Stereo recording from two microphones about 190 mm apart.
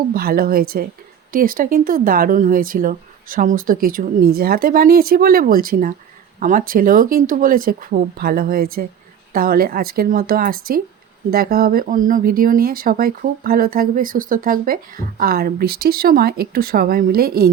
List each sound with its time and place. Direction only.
0.1 s speech: 50° right (ahead or behind)